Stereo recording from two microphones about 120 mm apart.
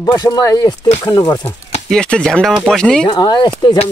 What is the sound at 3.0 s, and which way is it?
Speech, 35° left (ahead or behind).